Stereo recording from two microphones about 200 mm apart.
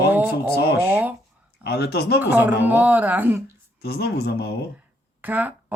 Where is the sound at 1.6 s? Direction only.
55° left (ahead or behind).